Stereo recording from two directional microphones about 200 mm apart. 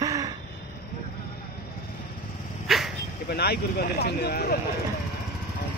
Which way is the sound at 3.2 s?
55° left (ahead or behind).